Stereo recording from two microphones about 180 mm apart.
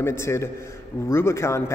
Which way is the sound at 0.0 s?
15° left (ahead or behind).